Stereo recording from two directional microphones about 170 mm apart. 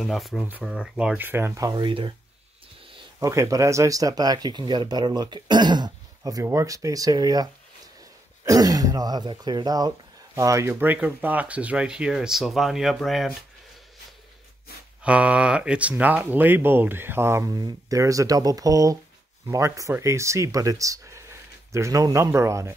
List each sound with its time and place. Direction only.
0.0 s speech: centre (ahead or behind); by 2.1 s 30° right (ahead or behind)
3.2 s speech: 20° right (ahead or behind); by 13.3 s centre (ahead or behind)
15.0 s speech: 5° right (ahead or behind)